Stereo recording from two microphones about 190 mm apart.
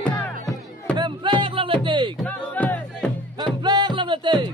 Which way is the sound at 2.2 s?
10° left (ahead or behind).